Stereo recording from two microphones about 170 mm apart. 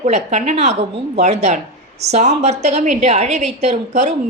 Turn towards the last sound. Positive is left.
turn(degrees=-45)  # may be behind; listen again after turning